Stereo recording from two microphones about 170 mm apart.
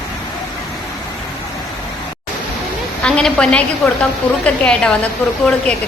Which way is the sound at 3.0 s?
5° left (ahead or behind).